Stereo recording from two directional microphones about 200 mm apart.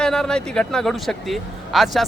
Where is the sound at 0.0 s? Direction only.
5° left (ahead or behind).